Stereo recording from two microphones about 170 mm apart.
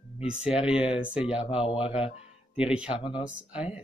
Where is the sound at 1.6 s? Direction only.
30° left (ahead or behind).